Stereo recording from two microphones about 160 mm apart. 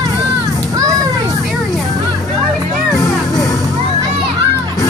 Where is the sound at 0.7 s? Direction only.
20° right (ahead or behind).